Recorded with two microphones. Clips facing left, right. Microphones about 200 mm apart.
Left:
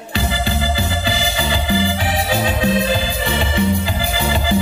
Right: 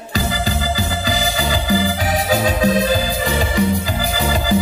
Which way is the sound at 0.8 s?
40° right (ahead or behind).